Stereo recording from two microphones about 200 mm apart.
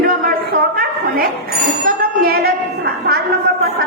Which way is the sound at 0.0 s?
45° right (ahead or behind).